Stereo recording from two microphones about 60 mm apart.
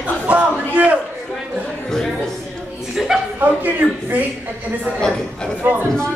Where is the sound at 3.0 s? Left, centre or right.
Centre.